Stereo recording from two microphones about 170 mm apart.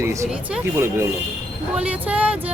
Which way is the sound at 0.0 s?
15° right (ahead or behind).